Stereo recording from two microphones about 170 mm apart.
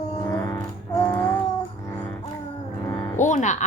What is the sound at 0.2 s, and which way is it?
Music, 20° left (ahead or behind).